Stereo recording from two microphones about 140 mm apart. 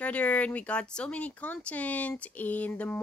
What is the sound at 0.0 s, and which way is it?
Speech, 10° left (ahead or behind).